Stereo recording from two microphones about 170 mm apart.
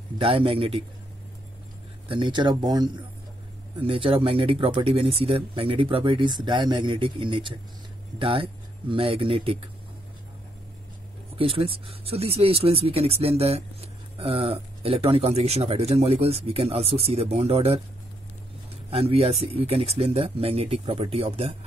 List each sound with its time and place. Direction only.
0.2 s speech: 30° right (ahead or behind)
2.0 s speech: 30° right (ahead or behind)
11.3 s speech: 35° right (ahead or behind)
18.9 s speech: 35° right (ahead or behind)